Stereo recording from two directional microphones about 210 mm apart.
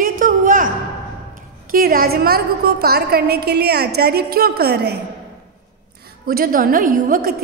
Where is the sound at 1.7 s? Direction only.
45° right (ahead or behind).